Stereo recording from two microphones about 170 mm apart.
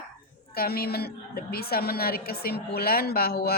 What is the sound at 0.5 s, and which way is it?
A woman's voice, 65° left (ahead or behind).